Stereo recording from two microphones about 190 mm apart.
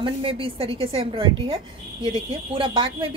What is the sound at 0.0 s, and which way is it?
A woman's voice, 30° right (ahead or behind).